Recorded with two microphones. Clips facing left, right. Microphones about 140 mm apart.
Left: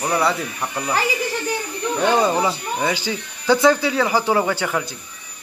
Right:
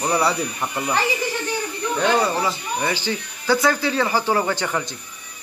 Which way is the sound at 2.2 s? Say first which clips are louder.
Left 3 dB; 15° left (ahead or behind).